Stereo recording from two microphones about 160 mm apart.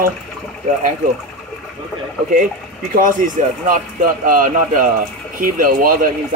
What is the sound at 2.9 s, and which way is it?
Speech, 55° right (ahead or behind).